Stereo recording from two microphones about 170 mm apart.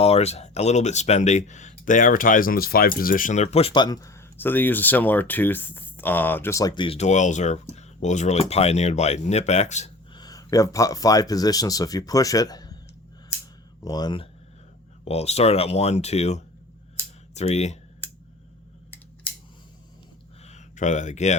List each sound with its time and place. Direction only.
0.0 s speech: 40° left (ahead or behind)
10.2 s speech: 20° left (ahead or behind)
13.8 s speech: 25° left (ahead or behind)
15.0 s speech: 40° left (ahead or behind)
20.4 s a sound: 45° left (ahead or behind)